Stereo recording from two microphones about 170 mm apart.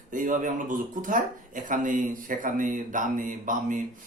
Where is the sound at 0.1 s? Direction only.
50° right (ahead or behind).